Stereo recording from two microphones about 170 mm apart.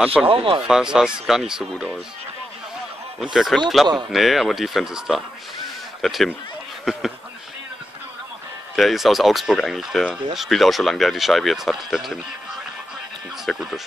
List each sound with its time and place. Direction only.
0.0 s speech: 5° right (ahead or behind)
0.3 s speech: 30° right (ahead or behind)
0.7 s speech: 5° right (ahead or behind)
3.2 s speech: centre (ahead or behind)
6.8 s a sound: centre (ahead or behind)
8.7 s speech: centre (ahead or behind)
13.5 s speech: centre (ahead or behind)